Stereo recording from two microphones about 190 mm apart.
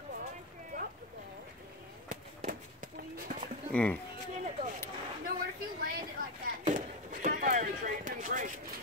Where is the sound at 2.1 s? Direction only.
45° right (ahead or behind).